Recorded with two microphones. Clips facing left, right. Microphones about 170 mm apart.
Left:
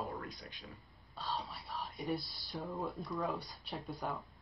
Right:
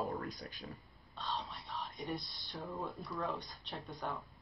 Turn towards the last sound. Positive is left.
turn(degrees=0)  # may be behind; listen again after turning